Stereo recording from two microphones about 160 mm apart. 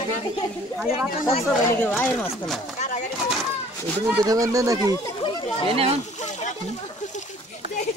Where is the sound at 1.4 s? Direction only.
10° left (ahead or behind).